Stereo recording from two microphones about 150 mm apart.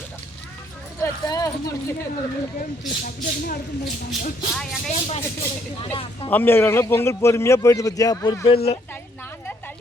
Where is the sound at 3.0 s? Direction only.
75° left (ahead or behind).